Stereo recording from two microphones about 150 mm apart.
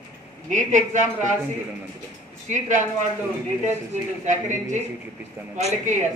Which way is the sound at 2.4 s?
55° right (ahead or behind).